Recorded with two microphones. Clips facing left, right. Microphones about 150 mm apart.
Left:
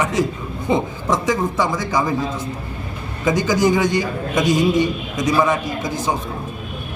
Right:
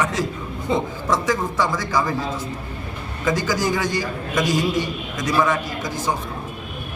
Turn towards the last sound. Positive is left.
turn(degrees=20)  # may be behind; listen again after turning